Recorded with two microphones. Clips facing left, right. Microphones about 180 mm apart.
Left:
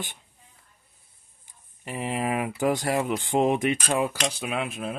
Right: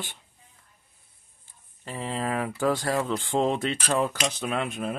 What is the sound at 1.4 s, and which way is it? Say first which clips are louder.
Speech: left 1 dB; 15° left (ahead or behind).